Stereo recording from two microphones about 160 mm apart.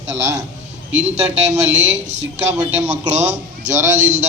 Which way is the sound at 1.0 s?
45° right (ahead or behind).